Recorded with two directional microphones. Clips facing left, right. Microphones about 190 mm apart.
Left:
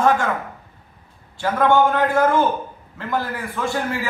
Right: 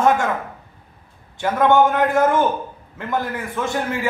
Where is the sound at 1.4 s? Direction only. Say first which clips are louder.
Right 1 dB; 15° right (ahead or behind).